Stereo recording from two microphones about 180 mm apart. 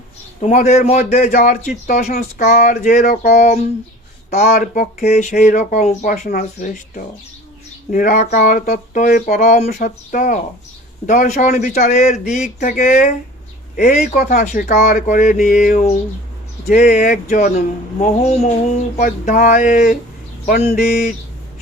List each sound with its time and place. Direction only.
0.4 s speech: 40° left (ahead or behind)
2.1 s speech: 55° left (ahead or behind)
2.6 s speech: 40° left (ahead or behind)